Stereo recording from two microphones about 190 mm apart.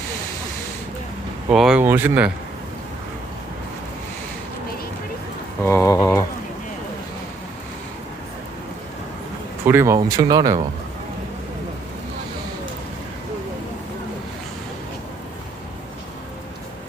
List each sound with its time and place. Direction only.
1.5 s speech: 5° right (ahead or behind)
5.6 s speech: 15° left (ahead or behind)
9.6 s speech: 15° right (ahead or behind)